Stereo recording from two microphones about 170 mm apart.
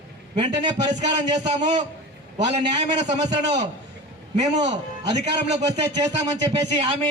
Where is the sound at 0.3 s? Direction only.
40° right (ahead or behind).